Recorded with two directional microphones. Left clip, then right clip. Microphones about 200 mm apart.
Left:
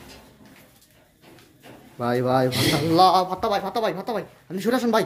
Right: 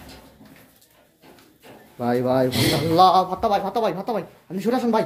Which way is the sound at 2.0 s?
15° left (ahead or behind).